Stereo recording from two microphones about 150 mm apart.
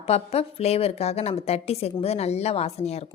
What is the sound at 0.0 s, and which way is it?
A woman's voice, 45° left (ahead or behind).